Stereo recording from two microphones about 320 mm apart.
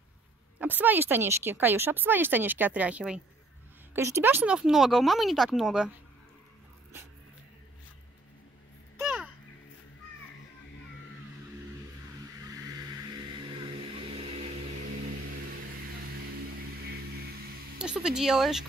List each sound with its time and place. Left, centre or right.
0.6 s speech: centre
8.9 s babbling: centre
12.4 s vehicle: centre
16.8 s a sound: right
17.7 s speech: centre